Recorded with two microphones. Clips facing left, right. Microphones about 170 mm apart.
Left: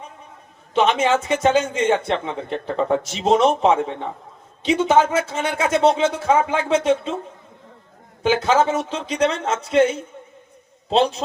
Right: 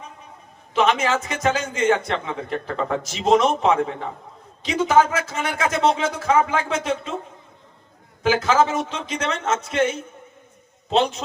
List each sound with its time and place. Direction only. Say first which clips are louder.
0.7 s speech: left 2 dB; 30° left (ahead or behind)
8.2 s a man's voice: left 1 dB; 30° left (ahead or behind)